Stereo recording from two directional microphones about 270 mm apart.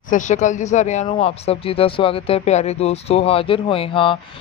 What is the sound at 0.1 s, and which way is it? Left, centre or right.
Speech, left.